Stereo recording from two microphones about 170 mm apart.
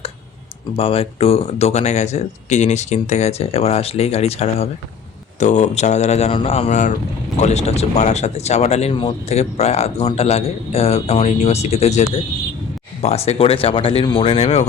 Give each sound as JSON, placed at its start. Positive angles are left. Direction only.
{"t": 0.8, "sound": "speech", "side_deg": 35}